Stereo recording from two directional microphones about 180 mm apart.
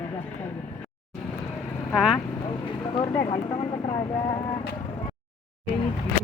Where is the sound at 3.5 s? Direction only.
15° left (ahead or behind).